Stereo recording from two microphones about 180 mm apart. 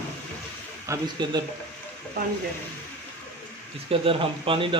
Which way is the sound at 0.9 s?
25° right (ahead or behind).